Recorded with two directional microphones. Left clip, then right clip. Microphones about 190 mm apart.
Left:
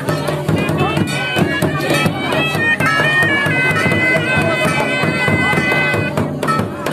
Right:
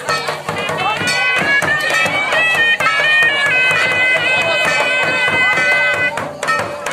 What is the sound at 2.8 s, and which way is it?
Bagpipes, 20° left (ahead or behind).